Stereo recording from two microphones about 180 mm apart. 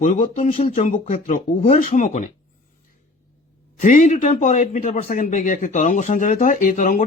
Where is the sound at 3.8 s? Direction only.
45° left (ahead or behind).